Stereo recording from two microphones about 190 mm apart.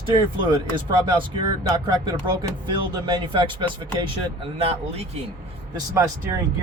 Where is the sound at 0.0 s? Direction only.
25° right (ahead or behind).